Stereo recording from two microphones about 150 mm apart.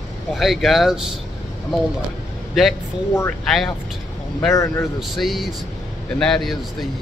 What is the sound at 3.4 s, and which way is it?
Speech, centre (ahead or behind).